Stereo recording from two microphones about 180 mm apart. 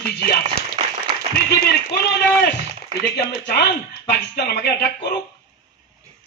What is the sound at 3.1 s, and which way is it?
A man's voice, 65° left (ahead or behind).